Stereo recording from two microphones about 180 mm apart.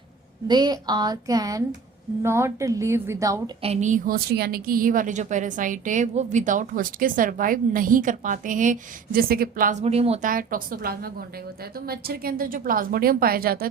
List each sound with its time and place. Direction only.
0.4 s a woman's voice: 25° right (ahead or behind)
3.6 s a woman's voice: 40° right (ahead or behind)
10.2 s a woman's voice: 50° right (ahead or behind)